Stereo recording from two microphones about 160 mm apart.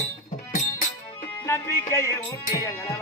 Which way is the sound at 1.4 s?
15° left (ahead or behind).